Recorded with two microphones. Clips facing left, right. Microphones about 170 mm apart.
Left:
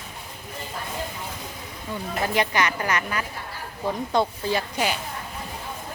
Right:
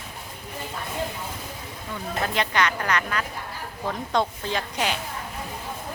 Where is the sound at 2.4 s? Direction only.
10° left (ahead or behind).